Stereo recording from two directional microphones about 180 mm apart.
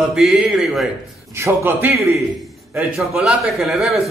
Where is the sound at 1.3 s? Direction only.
15° right (ahead or behind).